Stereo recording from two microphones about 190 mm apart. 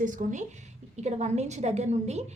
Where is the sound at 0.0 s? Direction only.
45° right (ahead or behind).